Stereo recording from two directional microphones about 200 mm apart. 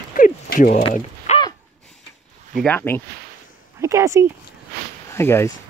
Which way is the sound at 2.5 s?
10° left (ahead or behind).